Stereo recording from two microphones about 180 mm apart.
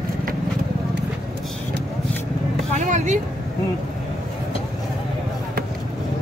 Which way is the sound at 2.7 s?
40° right (ahead or behind).